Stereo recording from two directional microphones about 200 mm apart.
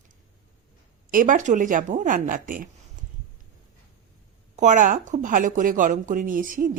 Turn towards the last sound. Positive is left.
turn(degrees=-45)  # may be behind; listen again after turning